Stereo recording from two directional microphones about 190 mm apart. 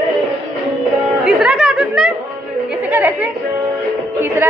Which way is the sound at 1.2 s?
5° right (ahead or behind).